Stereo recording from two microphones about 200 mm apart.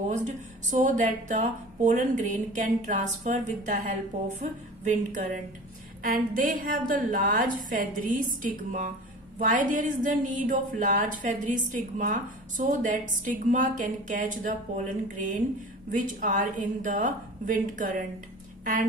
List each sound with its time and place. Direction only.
0.7 s a woman's voice: 40° right (ahead or behind)